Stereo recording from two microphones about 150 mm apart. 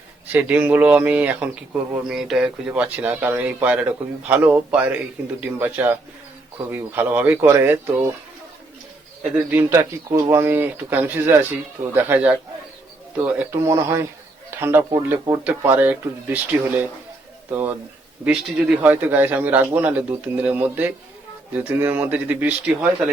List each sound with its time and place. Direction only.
0.3 s speech: 10° right (ahead or behind)
9.5 s speech: 15° right (ahead or behind)
13.5 s speech: 20° right (ahead or behind)